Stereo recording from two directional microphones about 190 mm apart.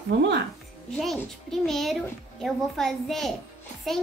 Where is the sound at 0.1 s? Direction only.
70° right (ahead or behind).